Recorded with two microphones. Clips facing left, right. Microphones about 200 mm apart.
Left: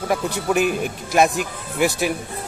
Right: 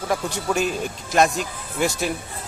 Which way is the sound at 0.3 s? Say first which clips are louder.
Left 3 dB; 60° left (ahead or behind).